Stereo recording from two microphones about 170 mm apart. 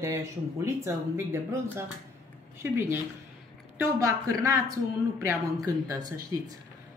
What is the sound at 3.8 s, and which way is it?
Speech, 20° right (ahead or behind).